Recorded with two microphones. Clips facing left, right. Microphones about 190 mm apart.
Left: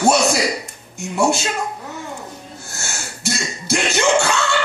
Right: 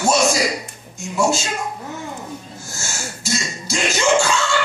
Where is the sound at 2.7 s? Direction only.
60° left (ahead or behind).